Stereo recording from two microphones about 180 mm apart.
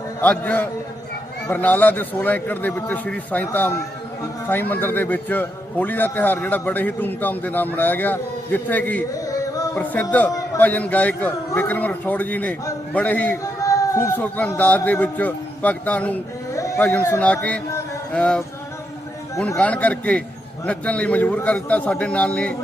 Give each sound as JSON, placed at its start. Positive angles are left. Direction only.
{"t": 0.2, "sound": "a man's voice", "side_deg": 10}